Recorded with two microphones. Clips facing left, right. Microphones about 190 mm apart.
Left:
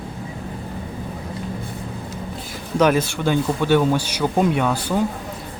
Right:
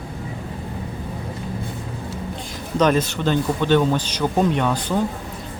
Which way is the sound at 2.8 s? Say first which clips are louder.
Left 1 dB; 10° left (ahead or behind).